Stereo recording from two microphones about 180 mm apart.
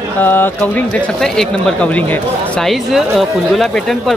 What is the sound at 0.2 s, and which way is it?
Speech, 10° left (ahead or behind).